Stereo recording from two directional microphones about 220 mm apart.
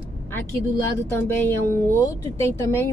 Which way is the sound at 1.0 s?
10° left (ahead or behind).